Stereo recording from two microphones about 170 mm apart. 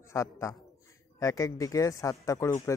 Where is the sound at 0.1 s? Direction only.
20° left (ahead or behind).